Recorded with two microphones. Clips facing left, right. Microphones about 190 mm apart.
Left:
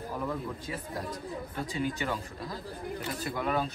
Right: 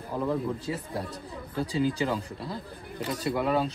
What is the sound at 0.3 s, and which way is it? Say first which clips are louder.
Speech: right 6 dB; 30° right (ahead or behind).